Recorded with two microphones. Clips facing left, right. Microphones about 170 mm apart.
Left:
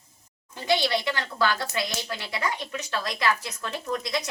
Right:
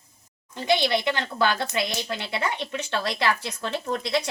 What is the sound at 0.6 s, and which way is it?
Speech, 20° right (ahead or behind).